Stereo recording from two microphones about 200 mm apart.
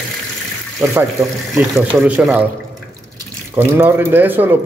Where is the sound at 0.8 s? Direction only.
15° right (ahead or behind).